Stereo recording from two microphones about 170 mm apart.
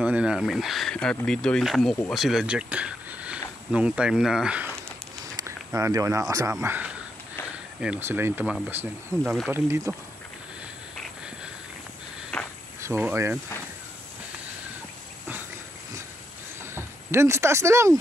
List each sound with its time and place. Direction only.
0.0 s speech: 5° right (ahead or behind)
9.2 s speech: centre (ahead or behind)
9.5 s speech: 15° right (ahead or behind)
12.3 s cricket: 5° left (ahead or behind)
12.8 s speech: 15° right (ahead or behind)
16.7 s speech: 15° right (ahead or behind)